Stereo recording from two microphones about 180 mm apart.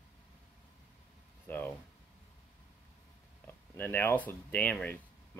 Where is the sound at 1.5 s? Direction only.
10° left (ahead or behind).